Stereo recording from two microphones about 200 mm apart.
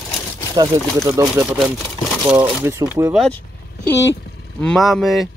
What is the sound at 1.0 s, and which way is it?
Speech, 15° right (ahead or behind).